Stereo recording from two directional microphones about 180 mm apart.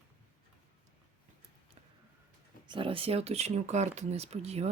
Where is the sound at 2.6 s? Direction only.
30° right (ahead or behind).